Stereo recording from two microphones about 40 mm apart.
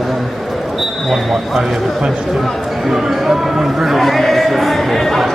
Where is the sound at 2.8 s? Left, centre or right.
Centre.